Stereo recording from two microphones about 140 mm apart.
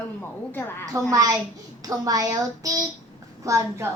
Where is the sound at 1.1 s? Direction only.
25° right (ahead or behind).